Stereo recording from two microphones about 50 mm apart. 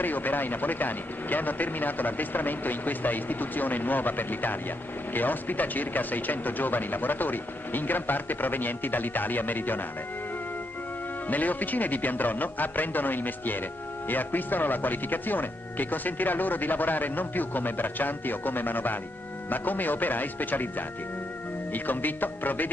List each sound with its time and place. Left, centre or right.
0.0 s speech: left
11.2 s speech: left
21.7 s speech: left